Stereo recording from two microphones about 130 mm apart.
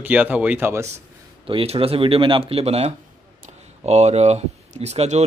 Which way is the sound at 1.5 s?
45° right (ahead or behind).